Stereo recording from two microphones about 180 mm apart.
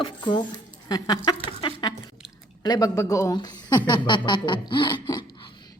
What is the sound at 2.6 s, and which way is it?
Speech, 20° left (ahead or behind).